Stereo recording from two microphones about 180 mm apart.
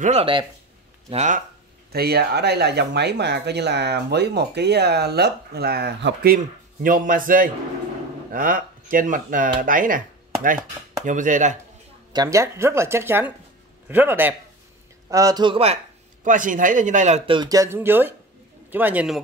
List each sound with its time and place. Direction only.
0.0 s speech: 35° right (ahead or behind)
1.1 s speech: 45° right (ahead or behind)
1.9 s speech: 60° right (ahead or behind); by 11.5 s 45° right (ahead or behind)
12.1 s a man's voice: 20° right (ahead or behind)
16.3 s speech: 45° right (ahead or behind)
17.3 s speech: 20° right (ahead or behind)